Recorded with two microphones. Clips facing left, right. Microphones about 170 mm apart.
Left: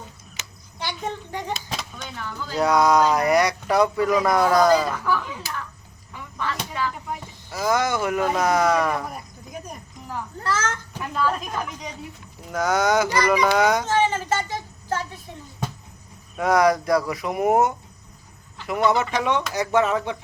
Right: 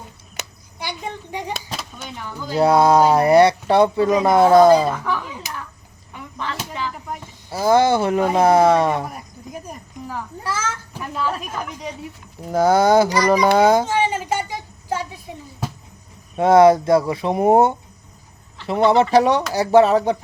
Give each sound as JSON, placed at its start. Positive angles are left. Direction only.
{"t": 0.8, "sound": "a child's voice", "side_deg": -10}
{"t": 2.6, "sound": "speech", "side_deg": -30}
{"t": 7.5, "sound": "speech", "side_deg": -30}
{"t": 10.1, "sound": "a woman's voice", "side_deg": -10}
{"t": 12.5, "sound": "speech", "side_deg": -30}
{"t": 13.8, "sound": "a sound", "side_deg": -10}
{"t": 16.4, "sound": "speech", "side_deg": -25}